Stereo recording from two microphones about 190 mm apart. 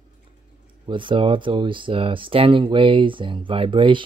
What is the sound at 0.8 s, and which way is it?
Speech, 25° right (ahead or behind).